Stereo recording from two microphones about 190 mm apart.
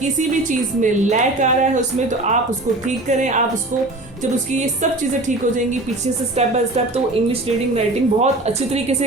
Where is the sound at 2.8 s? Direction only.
40° right (ahead or behind).